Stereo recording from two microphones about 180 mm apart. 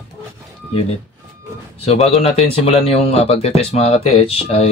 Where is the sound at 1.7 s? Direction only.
35° left (ahead or behind).